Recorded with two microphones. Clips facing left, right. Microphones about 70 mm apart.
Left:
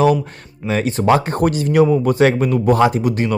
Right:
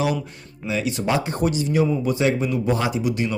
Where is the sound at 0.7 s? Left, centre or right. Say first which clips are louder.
Left 7 dB; left.